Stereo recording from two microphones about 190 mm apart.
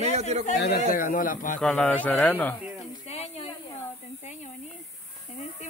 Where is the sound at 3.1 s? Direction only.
35° left (ahead or behind).